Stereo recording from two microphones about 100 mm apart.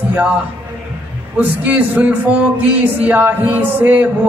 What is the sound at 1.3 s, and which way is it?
Speech, 15° right (ahead or behind).